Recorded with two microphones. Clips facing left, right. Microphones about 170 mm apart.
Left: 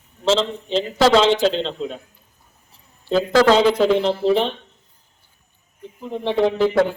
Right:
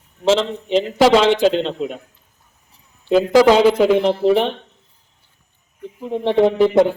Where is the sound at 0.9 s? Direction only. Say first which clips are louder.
Right 1 dB; 10° right (ahead or behind).